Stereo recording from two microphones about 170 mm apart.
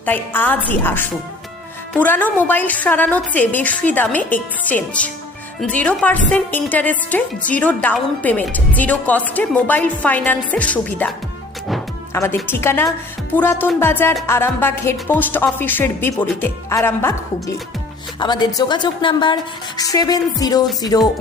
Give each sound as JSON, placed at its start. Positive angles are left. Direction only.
{"t": 0.0, "sound": "a woman's voice", "side_deg": 10}
{"t": 12.1, "sound": "a woman's voice", "side_deg": 15}